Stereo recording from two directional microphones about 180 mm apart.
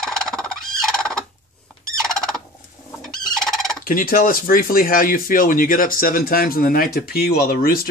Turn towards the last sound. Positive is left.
turn(degrees=55)  # may be behind; listen again after turning